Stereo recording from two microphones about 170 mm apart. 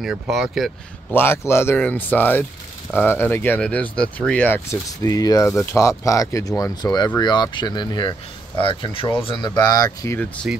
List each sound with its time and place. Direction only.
0.0 s speech: centre (ahead or behind)
1.1 s speech: 15° left (ahead or behind)
10.5 s speech: 5° right (ahead or behind)